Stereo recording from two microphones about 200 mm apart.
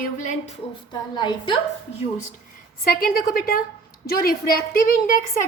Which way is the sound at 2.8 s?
50° left (ahead or behind).